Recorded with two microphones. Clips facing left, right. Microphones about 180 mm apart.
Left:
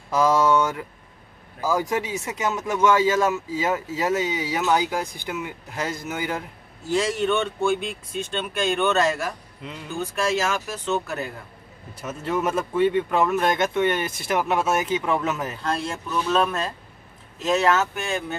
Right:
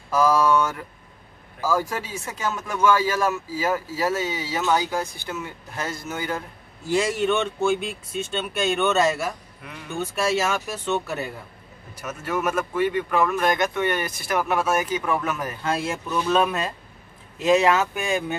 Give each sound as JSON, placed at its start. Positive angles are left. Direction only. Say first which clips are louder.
{"t": 0.1, "sound": "speech", "louder": "even", "side_deg": 20}
{"t": 6.9, "sound": "speech", "louder": "even", "side_deg": -10}
{"t": 12.0, "sound": "speech", "louder": "left 1 dB", "side_deg": 25}
{"t": 15.6, "sound": "speech", "louder": "right 4 dB", "side_deg": -5}